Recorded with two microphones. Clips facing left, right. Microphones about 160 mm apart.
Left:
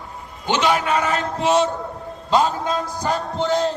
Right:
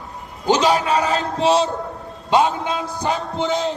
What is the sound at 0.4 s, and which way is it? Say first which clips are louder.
A man's voice: right 3 dB; 40° right (ahead or behind).